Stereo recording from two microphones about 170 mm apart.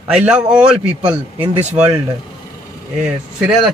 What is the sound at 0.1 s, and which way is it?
Speech, 5° right (ahead or behind).